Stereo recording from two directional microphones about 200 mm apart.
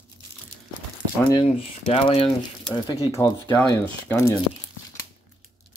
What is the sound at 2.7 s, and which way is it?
Speech, 20° left (ahead or behind).